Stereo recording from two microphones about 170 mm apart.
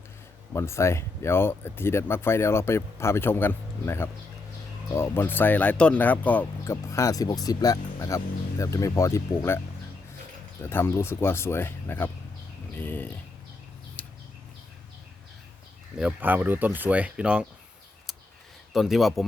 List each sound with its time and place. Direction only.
0.5 s speech: 15° left (ahead or behind)
10.6 s speech: 15° left (ahead or behind)
14.0 s a sound: 5° left (ahead or behind)
16.0 s speech: 5° right (ahead or behind)
18.7 s speech: centre (ahead or behind)